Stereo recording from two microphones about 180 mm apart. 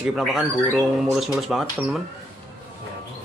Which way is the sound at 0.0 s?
Centre (ahead or behind).